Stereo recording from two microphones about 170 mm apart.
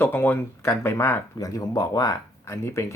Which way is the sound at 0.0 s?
10° left (ahead or behind).